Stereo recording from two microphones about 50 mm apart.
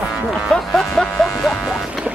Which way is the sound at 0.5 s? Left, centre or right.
Centre.